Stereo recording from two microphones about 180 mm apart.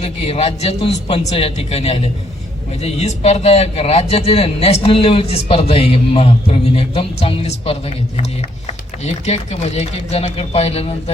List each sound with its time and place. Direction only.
0.0 s a man's voice: 35° left (ahead or behind)